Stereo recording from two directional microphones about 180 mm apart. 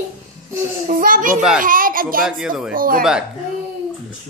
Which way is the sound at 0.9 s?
50° right (ahead or behind).